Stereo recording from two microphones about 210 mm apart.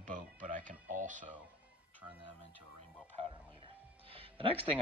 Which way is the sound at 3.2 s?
25° right (ahead or behind).